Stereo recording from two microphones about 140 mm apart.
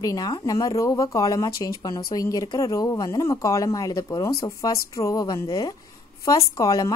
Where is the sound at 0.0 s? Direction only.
25° left (ahead or behind).